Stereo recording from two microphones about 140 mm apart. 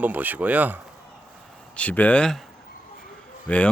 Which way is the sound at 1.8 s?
10° left (ahead or behind).